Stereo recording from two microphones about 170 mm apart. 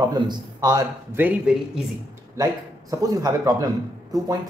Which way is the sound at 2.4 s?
20° right (ahead or behind).